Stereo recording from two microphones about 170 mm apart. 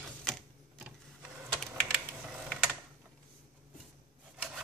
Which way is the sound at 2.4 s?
Centre (ahead or behind).